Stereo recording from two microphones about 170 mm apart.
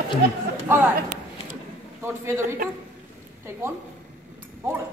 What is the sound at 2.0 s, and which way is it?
Speech, 15° right (ahead or behind).